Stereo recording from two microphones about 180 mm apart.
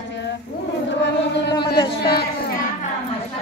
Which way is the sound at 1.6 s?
60° left (ahead or behind).